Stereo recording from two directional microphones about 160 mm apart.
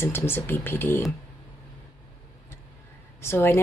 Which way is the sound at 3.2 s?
15° left (ahead or behind).